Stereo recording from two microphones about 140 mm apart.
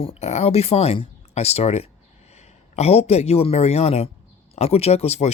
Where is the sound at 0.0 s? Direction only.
45° left (ahead or behind).